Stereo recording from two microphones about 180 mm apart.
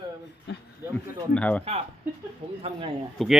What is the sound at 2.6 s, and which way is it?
Speech, 30° right (ahead or behind).